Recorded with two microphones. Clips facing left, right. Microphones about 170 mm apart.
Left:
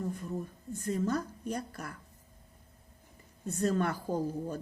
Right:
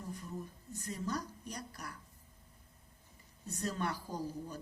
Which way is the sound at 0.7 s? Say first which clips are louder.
Left 8 dB; 50° left (ahead or behind).